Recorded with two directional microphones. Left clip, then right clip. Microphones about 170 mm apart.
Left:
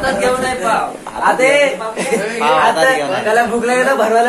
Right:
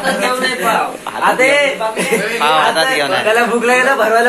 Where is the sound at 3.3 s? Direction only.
35° right (ahead or behind).